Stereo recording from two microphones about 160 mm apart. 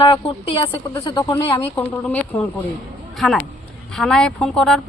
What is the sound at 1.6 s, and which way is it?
Speech, 15° left (ahead or behind).